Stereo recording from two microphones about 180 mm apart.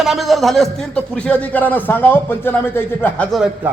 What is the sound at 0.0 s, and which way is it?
A man's voice, centre (ahead or behind).